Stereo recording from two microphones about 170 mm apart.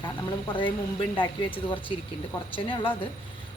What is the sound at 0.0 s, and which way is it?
Speech, 25° left (ahead or behind).